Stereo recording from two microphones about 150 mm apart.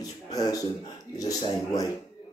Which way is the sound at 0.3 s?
25° left (ahead or behind).